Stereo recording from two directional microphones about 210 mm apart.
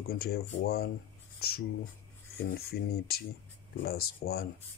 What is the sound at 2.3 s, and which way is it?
Speech, 45° left (ahead or behind).